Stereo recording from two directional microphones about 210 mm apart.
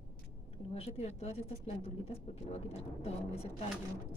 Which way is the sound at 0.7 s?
30° left (ahead or behind).